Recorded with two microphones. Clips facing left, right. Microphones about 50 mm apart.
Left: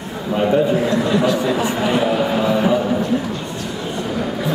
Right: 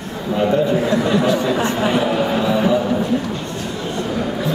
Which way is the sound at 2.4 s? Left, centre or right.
Centre.